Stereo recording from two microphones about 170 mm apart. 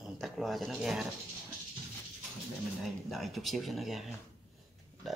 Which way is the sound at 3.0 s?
Centre (ahead or behind).